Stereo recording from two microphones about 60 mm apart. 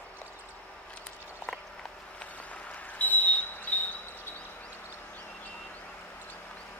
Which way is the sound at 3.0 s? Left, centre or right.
Left.